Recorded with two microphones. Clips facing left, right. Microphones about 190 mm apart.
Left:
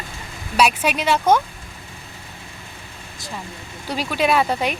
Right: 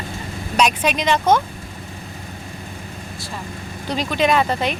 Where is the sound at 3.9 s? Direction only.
10° left (ahead or behind).